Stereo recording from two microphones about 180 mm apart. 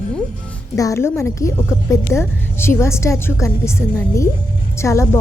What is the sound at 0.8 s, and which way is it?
A woman's voice, 15° left (ahead or behind).